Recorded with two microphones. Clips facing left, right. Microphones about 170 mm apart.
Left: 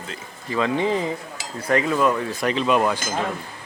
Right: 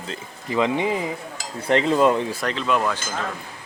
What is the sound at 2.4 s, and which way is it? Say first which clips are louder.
Speech: left 6 dB; 15° left (ahead or behind).